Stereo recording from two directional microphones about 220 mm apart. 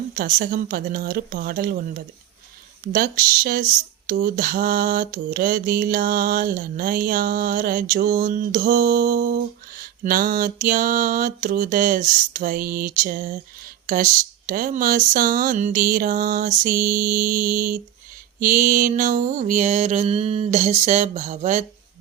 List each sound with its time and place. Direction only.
0.2 s speech: 40° right (ahead or behind)